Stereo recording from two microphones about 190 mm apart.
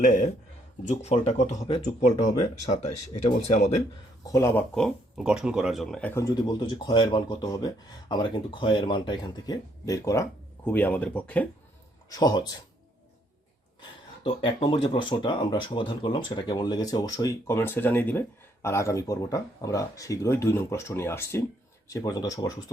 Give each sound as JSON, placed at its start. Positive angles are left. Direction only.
{"t": 0.0, "sound": "speech", "side_deg": 40}
{"t": 4.3, "sound": "speech", "side_deg": 15}
{"t": 4.7, "sound": "speech", "side_deg": 0}
{"t": 12.0, "sound": "speech", "side_deg": 20}
{"t": 14.3, "sound": "speech", "side_deg": 25}